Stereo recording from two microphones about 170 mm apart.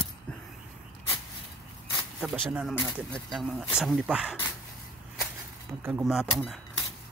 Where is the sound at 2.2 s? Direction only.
5° right (ahead or behind).